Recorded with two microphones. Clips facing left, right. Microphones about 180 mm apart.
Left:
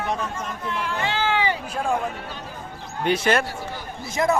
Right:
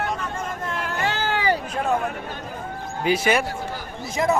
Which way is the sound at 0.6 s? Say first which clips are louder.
Even; 45° right (ahead or behind).